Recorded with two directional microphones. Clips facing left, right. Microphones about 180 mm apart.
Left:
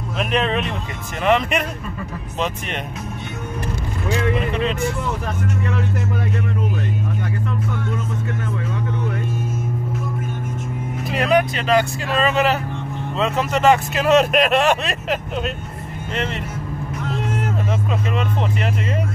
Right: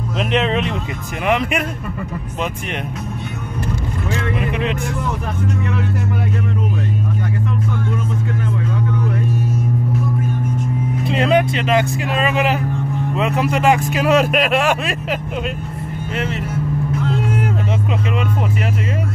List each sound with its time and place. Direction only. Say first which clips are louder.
0.3 s speech: right 2 dB; 25° right (ahead or behind)
1.2 s speech: left 1 dB; 10° right (ahead or behind)
4.4 s speech: even; 15° right (ahead or behind)
11.1 s speech: right 1 dB; 25° right (ahead or behind); by 16.4 s 5° right (ahead or behind)